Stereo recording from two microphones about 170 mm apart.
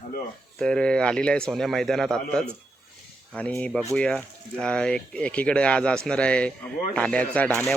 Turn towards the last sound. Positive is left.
turn(degrees=10)  # may be behind; listen again after turning